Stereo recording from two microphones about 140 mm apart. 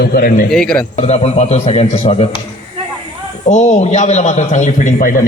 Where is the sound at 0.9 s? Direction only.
50° left (ahead or behind).